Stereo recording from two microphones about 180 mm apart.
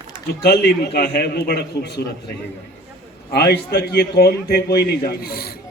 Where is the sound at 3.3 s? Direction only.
60° left (ahead or behind).